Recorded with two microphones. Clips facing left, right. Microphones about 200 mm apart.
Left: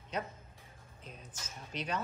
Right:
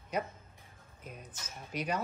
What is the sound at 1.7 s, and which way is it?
Speech, 10° right (ahead or behind).